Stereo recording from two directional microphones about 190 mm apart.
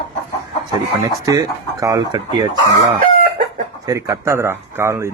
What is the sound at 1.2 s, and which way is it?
Speech, 15° right (ahead or behind).